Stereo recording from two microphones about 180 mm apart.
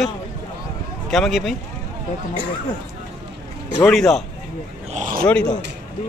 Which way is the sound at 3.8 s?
Centre (ahead or behind).